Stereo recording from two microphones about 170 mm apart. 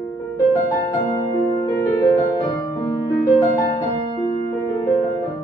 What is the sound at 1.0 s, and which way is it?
Music, 30° left (ahead or behind).